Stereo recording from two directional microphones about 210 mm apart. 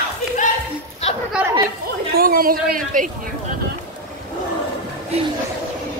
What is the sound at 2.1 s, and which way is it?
Speech, 45° right (ahead or behind).